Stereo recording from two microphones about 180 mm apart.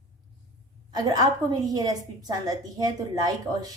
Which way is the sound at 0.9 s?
20° right (ahead or behind).